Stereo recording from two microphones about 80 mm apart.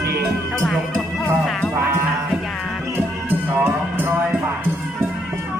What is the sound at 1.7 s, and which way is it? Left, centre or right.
Music, right.